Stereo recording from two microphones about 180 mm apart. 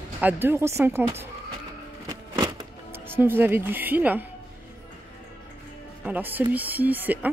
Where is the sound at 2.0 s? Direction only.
20° right (ahead or behind).